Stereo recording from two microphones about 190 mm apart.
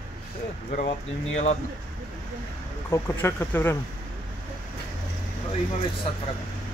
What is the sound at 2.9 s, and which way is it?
Speech, 10° left (ahead or behind).